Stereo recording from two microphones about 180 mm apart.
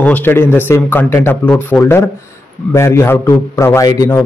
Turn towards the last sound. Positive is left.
turn(degrees=15)  # may be behind; listen again after turning